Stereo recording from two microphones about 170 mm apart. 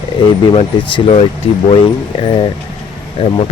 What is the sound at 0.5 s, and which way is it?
Speech, 35° left (ahead or behind).